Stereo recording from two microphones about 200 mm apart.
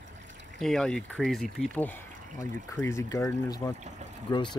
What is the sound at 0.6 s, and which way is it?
Speech, centre (ahead or behind).